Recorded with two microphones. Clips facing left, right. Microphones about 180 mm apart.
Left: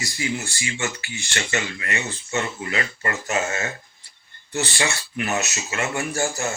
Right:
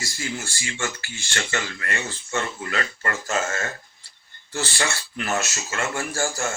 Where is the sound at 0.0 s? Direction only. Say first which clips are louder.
Left 4 dB; 20° left (ahead or behind).